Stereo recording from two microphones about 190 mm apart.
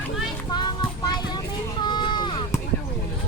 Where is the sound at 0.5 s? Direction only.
25° left (ahead or behind).